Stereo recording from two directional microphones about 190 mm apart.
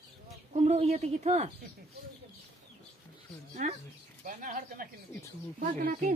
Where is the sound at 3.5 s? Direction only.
40° right (ahead or behind).